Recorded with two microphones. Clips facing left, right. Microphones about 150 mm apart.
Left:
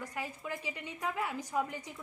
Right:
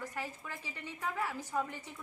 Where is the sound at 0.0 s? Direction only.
15° left (ahead or behind).